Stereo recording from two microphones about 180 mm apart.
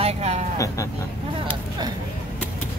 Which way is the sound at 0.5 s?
15° left (ahead or behind).